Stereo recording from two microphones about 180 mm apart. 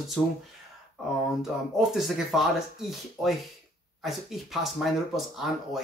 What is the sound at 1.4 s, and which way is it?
Speech, centre (ahead or behind).